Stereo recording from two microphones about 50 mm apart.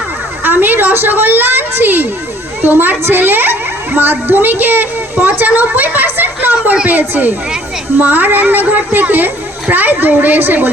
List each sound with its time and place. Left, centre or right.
0.4 s a woman's voice: right
5.5 s a sound: right
6.8 s a child's voice: right